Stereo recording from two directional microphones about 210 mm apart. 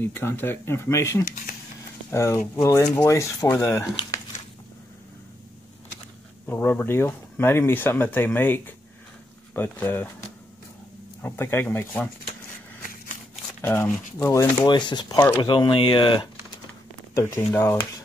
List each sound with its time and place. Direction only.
0.0 s speech: 10° left (ahead or behind)
6.4 s speech: 10° left (ahead or behind)
11.2 s speech: 10° left (ahead or behind)
13.6 s speech: 10° left (ahead or behind)